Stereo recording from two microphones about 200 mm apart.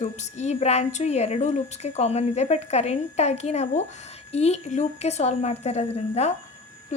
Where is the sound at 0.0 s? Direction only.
35° left (ahead or behind).